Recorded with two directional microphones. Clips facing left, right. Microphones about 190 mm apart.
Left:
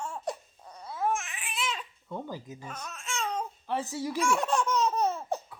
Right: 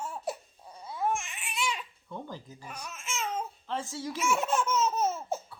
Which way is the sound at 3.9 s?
15° left (ahead or behind).